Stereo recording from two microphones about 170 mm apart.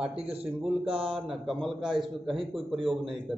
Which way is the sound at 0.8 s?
30° right (ahead or behind).